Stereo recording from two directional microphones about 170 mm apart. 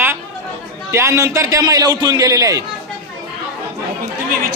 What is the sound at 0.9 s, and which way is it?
A man's voice, 15° right (ahead or behind).